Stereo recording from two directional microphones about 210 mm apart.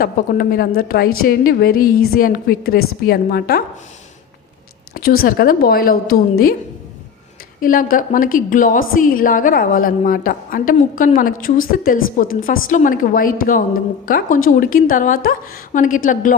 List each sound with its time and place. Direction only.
0.0 s a woman's voice: 45° left (ahead or behind)
4.9 s a woman's voice: 45° left (ahead or behind)
7.6 s a woman's voice: 40° left (ahead or behind)